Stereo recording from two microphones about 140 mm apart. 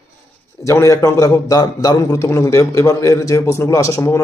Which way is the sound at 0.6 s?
20° left (ahead or behind).